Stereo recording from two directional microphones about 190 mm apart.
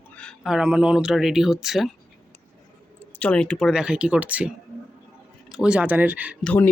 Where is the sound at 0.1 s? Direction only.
5° left (ahead or behind).